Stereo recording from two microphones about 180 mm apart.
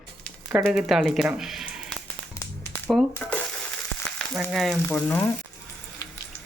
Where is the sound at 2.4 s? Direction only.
20° left (ahead or behind).